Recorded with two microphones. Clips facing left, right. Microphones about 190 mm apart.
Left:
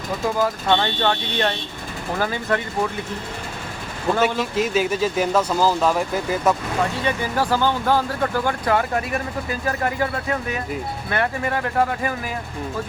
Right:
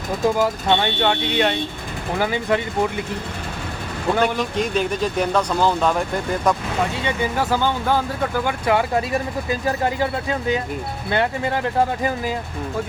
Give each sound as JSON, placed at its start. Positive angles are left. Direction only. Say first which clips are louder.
{"t": 0.3, "sound": "speech", "louder": "right 1 dB", "side_deg": -15}
{"t": 4.2, "sound": "speech", "louder": "left 1 dB", "side_deg": 5}
{"t": 7.0, "sound": "speech", "louder": "even", "side_deg": -20}